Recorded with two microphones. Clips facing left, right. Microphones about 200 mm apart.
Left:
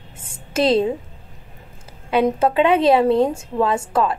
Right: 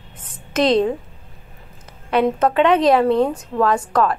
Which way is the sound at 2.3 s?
25° left (ahead or behind).